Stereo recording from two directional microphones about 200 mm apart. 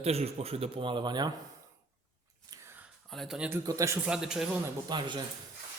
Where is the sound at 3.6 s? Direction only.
15° right (ahead or behind).